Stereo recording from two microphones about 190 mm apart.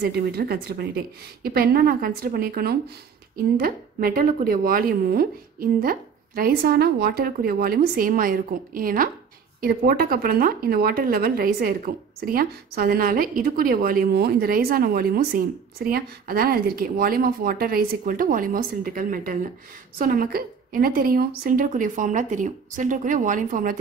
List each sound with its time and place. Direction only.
0.0 s a woman's voice: 55° right (ahead or behind)